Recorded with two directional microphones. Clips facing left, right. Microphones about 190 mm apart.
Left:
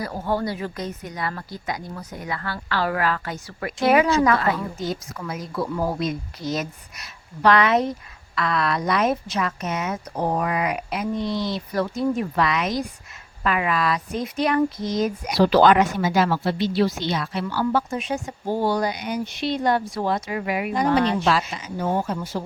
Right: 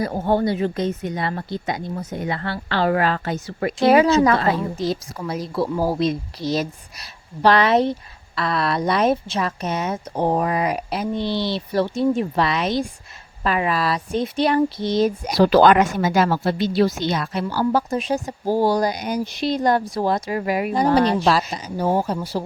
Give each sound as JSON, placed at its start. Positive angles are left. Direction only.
{"t": 0.0, "sound": "speech", "side_deg": -25}
{"t": 15.4, "sound": "speech", "side_deg": -45}